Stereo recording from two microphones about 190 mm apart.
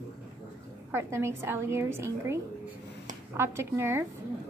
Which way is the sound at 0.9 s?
15° right (ahead or behind).